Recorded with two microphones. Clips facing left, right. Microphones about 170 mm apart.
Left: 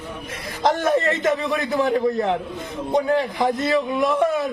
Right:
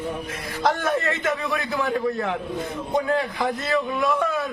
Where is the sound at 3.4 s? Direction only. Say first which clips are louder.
Left 4 dB; 20° left (ahead or behind).